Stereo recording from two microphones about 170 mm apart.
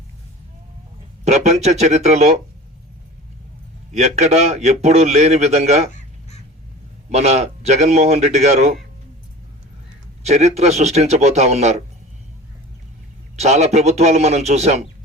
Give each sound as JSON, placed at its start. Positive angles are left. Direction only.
{"t": 1.2, "sound": "a man's voice", "side_deg": -40}
{"t": 3.9, "sound": "a man's voice", "side_deg": -40}
{"t": 7.1, "sound": "a man's voice", "side_deg": -40}
{"t": 10.2, "sound": "a man's voice", "side_deg": -40}
{"t": 13.4, "sound": "a man's voice", "side_deg": -40}